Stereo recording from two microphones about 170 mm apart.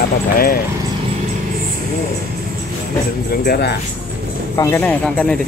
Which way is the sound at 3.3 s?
70° left (ahead or behind).